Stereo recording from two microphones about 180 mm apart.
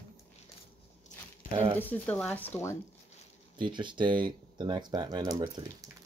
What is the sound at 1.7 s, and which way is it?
Speech, 10° left (ahead or behind).